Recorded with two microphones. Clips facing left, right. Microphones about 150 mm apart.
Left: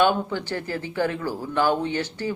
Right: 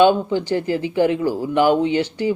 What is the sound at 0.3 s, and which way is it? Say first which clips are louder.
A man's voice: right 8 dB; 15° right (ahead or behind).